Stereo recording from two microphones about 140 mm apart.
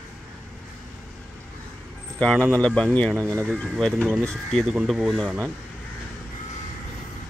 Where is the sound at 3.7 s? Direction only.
5° left (ahead or behind).